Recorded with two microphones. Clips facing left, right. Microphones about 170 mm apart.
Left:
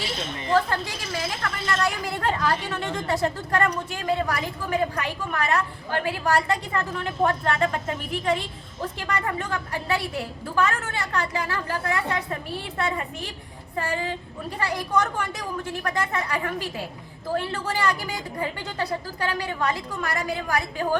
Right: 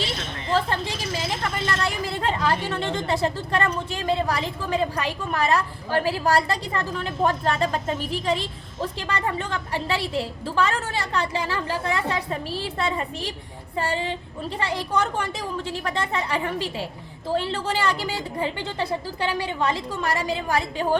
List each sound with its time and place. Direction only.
0.5 s a woman's voice: 25° right (ahead or behind)